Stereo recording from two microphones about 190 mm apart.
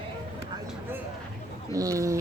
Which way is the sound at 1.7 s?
15° right (ahead or behind).